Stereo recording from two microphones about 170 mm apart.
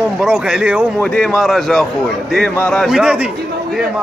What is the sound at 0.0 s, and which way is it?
Speech, 5° right (ahead or behind).